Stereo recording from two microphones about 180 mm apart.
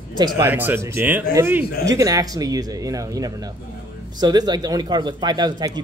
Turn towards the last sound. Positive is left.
turn(degrees=-20)  # may be behind; listen again after turning